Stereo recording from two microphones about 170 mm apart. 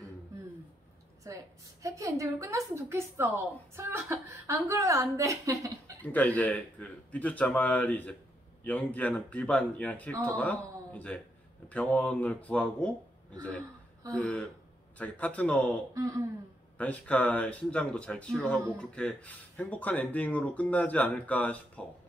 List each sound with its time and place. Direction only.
1.2 s a woman's voice: 20° right (ahead or behind)
6.1 s speech: 10° left (ahead or behind)